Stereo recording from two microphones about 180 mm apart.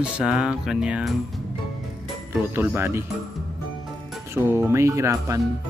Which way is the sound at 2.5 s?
15° right (ahead or behind).